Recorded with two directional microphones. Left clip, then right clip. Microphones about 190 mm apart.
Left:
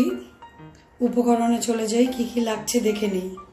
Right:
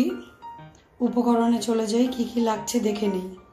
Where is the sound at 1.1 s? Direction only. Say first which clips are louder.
Left 1 dB; 25° right (ahead or behind).